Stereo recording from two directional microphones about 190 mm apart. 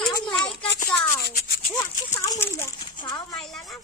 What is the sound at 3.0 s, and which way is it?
Speech, 25° left (ahead or behind).